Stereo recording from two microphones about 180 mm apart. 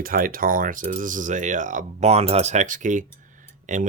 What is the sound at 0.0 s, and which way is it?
Speech, 55° right (ahead or behind).